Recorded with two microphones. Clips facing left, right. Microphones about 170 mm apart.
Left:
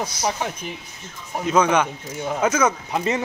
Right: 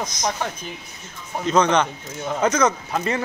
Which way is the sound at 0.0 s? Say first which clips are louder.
Left 1 dB; 10° left (ahead or behind).